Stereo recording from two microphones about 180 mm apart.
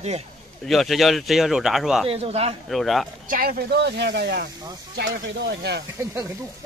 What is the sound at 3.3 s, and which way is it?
Speech, 55° right (ahead or behind).